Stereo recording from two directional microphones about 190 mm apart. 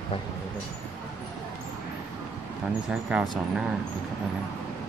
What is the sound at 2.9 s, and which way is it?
Speech, 5° right (ahead or behind).